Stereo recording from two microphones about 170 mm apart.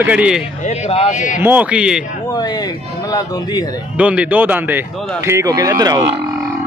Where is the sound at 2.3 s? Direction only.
25° left (ahead or behind).